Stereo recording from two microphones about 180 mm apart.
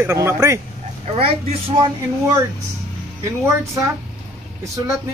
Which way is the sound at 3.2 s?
15° right (ahead or behind).